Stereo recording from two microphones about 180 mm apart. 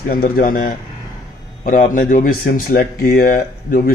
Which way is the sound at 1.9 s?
45° left (ahead or behind).